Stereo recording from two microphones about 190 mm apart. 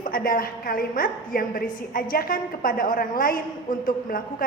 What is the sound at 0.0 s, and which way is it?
A woman's voice, 50° left (ahead or behind).